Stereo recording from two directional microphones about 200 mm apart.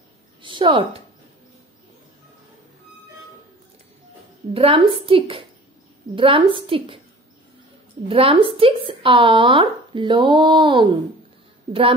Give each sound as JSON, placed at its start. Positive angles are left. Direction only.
{"t": 0.4, "sound": "a woman's voice", "side_deg": -25}
{"t": 4.6, "sound": "speech", "side_deg": -25}
{"t": 8.1, "sound": "speech", "side_deg": -25}